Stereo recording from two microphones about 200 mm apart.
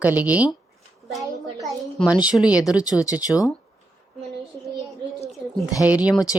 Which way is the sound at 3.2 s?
20° left (ahead or behind).